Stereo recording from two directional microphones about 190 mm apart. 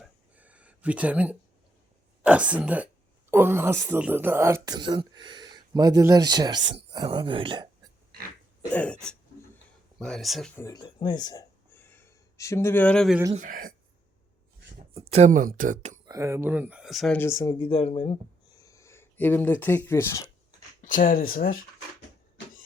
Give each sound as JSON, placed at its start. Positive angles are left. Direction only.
{"t": 0.0, "sound": "a sound", "side_deg": -5}
{"t": 2.2, "sound": "speech", "side_deg": -5}
{"t": 8.7, "sound": "throat clearing", "side_deg": 5}
{"t": 10.0, "sound": "speech", "side_deg": 0}
{"t": 10.6, "sound": "speech", "side_deg": 20}
{"t": 13.3, "sound": "speech", "side_deg": -45}
{"t": 15.1, "sound": "speech", "side_deg": -40}
{"t": 16.0, "sound": "speech", "side_deg": -15}
{"t": 17.2, "sound": "speech", "side_deg": 15}
{"t": 18.6, "sound": "speech", "side_deg": 15}
{"t": 20.8, "sound": "speech", "side_deg": 45}